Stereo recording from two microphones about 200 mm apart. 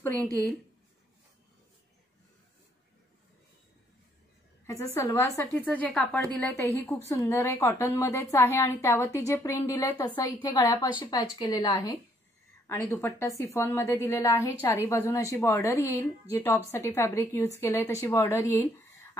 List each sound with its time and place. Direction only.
0.0 s speech: 10° left (ahead or behind)
4.6 s a woman's voice: 15° left (ahead or behind)